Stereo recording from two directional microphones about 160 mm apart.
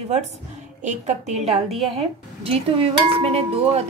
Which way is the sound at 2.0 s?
35° right (ahead or behind).